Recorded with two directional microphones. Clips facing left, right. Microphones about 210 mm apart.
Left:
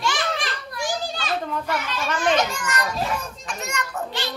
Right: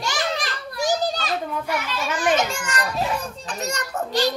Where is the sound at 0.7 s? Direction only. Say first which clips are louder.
Right 6 dB; 40° right (ahead or behind).